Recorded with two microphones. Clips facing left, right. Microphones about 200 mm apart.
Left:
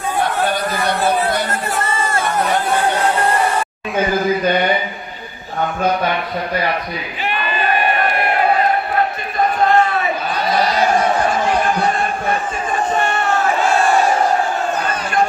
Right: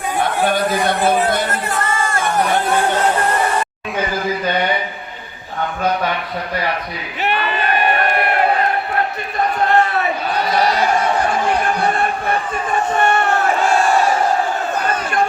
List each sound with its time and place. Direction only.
7.3 s crowd: 70° right (ahead or behind)
13.0 s crowd: 60° right (ahead or behind)